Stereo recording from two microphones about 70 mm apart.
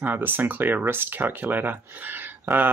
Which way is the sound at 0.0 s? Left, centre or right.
Right.